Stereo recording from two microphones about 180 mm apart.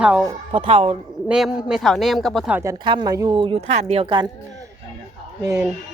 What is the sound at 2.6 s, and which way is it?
Speech, 20° right (ahead or behind).